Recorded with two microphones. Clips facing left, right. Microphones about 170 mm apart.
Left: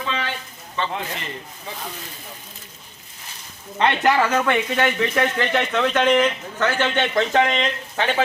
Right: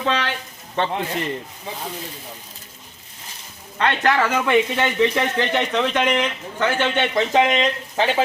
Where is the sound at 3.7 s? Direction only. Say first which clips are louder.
Left 1 dB; 15° left (ahead or behind).